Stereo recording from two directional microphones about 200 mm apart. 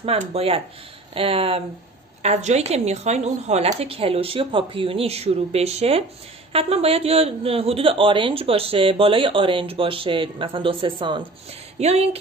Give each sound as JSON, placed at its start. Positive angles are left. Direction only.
{"t": 0.0, "sound": "a man's voice", "side_deg": -30}